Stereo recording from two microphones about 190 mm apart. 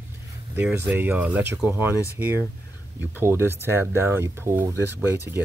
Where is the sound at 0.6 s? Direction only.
10° right (ahead or behind).